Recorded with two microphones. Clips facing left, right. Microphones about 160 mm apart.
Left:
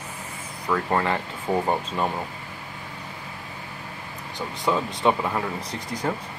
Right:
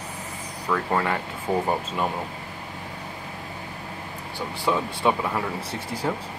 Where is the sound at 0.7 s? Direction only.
5° left (ahead or behind).